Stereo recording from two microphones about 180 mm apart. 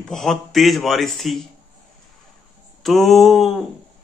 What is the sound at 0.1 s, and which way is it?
A man's voice, centre (ahead or behind).